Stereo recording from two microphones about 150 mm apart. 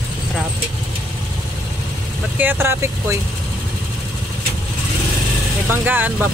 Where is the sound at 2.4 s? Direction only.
15° right (ahead or behind).